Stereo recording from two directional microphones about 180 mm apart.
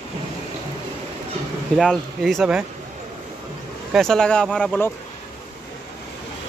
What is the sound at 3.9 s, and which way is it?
Speech, centre (ahead or behind).